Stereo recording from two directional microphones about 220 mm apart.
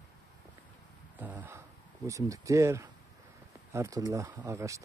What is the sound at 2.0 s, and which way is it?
Speech, 15° right (ahead or behind).